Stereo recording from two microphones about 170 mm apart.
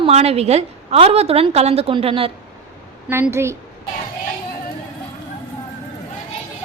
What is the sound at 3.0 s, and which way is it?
Speech, 15° right (ahead or behind).